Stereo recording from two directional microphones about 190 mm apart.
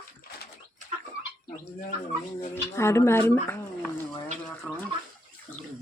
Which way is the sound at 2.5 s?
15° left (ahead or behind).